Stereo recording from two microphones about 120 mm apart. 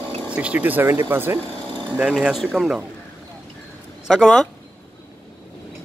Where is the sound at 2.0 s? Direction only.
5° right (ahead or behind).